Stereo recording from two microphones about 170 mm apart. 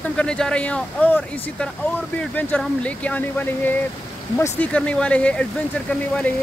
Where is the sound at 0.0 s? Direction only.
5° left (ahead or behind).